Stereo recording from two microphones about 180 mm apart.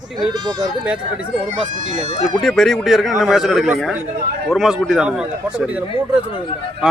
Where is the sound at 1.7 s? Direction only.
40° right (ahead or behind).